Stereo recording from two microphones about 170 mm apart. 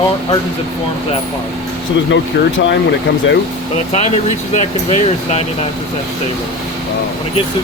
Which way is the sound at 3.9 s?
40° left (ahead or behind).